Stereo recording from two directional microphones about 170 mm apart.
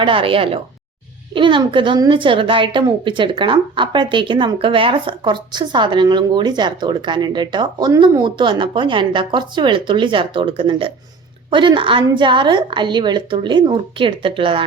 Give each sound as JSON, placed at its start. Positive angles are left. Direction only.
{"t": 0.0, "sound": "a woman's voice", "side_deg": -30}